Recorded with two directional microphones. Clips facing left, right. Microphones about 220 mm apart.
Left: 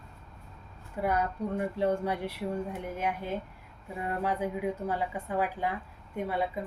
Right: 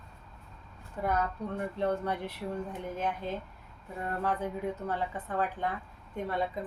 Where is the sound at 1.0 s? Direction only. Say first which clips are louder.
Left 2 dB; 10° left (ahead or behind).